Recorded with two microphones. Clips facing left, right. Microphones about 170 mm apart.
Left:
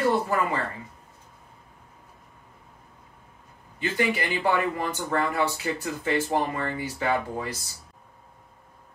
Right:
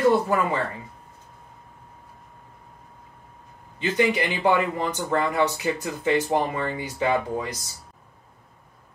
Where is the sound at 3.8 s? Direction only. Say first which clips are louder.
Right 4 dB; 15° right (ahead or behind).